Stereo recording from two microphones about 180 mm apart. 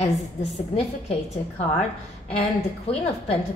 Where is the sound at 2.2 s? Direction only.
35° left (ahead or behind).